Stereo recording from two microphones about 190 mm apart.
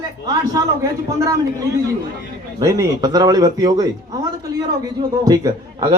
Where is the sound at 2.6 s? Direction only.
15° right (ahead or behind).